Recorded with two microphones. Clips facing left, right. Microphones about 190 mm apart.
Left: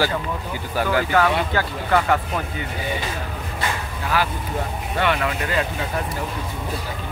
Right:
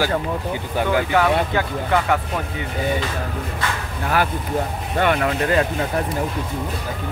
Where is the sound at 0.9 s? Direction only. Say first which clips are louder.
Right 1 dB; 10° right (ahead or behind).